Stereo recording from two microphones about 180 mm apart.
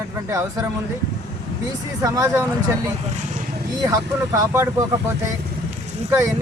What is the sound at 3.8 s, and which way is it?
Speech, 20° right (ahead or behind).